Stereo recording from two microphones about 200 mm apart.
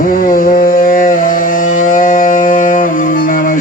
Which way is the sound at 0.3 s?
45° left (ahead or behind).